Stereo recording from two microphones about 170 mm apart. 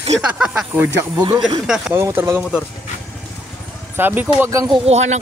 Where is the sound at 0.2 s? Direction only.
5° right (ahead or behind).